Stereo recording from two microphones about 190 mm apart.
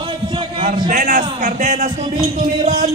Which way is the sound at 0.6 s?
45° right (ahead or behind).